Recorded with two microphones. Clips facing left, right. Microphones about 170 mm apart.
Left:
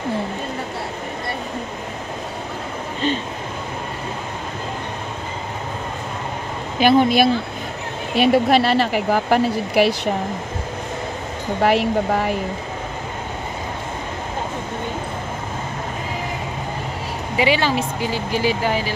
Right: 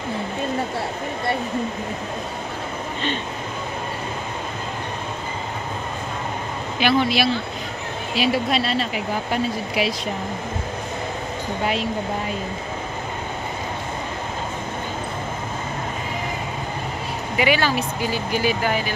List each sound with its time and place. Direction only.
6.8 s a woman's voice: 50° left (ahead or behind); by 9.9 s 70° left (ahead or behind)
11.6 s speech: 75° left (ahead or behind)
17.4 s speech: 25° left (ahead or behind)